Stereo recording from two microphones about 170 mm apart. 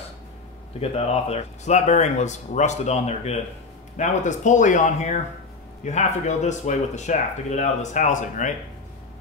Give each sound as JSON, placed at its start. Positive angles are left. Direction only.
{"t": 0.7, "sound": "speech", "side_deg": 35}